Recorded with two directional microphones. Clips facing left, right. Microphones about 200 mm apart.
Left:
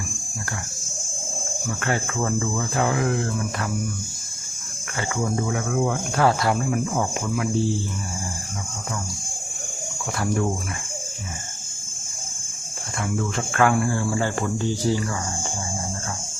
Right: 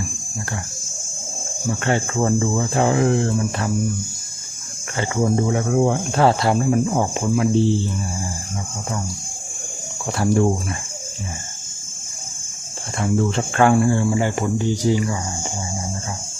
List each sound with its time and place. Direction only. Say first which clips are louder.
1.8 s speech: right 5 dB; 25° right (ahead or behind)
4.9 s speech: right 5 dB; 30° right (ahead or behind)
10.1 s speech: right 6 dB; 30° right (ahead or behind)
13.0 s speech: right 6 dB; 30° right (ahead or behind)